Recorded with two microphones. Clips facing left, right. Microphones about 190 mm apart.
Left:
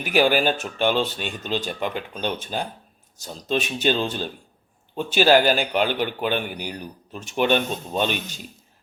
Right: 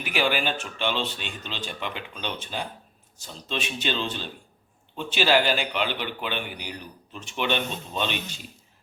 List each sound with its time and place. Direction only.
0.0 s a man's voice: 45° left (ahead or behind)